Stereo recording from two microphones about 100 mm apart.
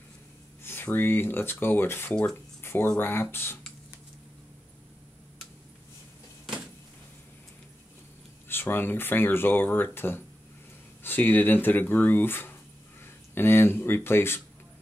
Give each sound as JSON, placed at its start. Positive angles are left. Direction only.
{"t": 0.7, "sound": "speech", "side_deg": 20}
{"t": 2.6, "sound": "a sound", "side_deg": 25}
{"t": 3.0, "sound": "speech", "side_deg": 25}
{"t": 8.5, "sound": "speech", "side_deg": 20}